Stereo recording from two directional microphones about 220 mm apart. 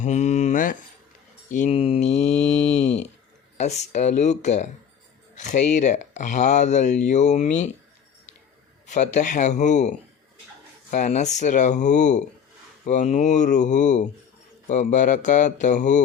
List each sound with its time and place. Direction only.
0.0 s speech: 30° left (ahead or behind)
1.5 s mantra: 35° left (ahead or behind)
3.6 s speech: 30° left (ahead or behind)
8.9 s speech: 35° left (ahead or behind)
10.9 s speech: 30° left (ahead or behind)